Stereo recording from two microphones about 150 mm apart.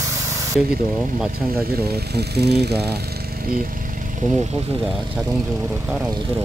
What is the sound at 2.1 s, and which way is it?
Speech, 90° right.